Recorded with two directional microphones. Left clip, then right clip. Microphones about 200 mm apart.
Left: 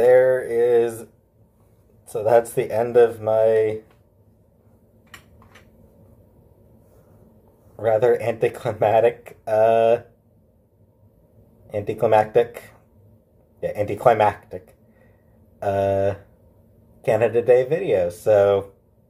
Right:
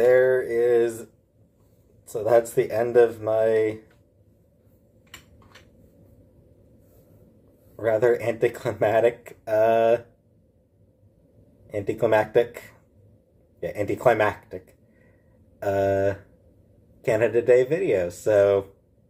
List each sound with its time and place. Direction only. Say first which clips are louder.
0.0 s a sound: left 3 dB; centre (ahead or behind)
2.0 s speech: left 3 dB; centre (ahead or behind)
7.7 s speech: left 3 dB; centre (ahead or behind)
11.6 s speech: left 2 dB; centre (ahead or behind)